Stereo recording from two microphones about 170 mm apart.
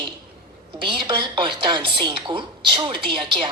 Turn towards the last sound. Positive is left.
turn(degrees=-30)  # may be behind; listen again after turning